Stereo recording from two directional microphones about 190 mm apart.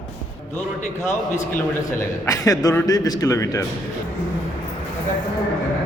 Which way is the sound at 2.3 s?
20° left (ahead or behind).